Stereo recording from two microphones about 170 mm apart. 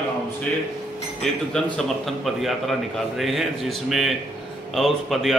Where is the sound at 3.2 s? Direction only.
Centre (ahead or behind).